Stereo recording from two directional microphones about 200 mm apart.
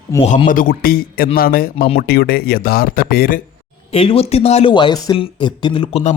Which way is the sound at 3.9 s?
30° left (ahead or behind).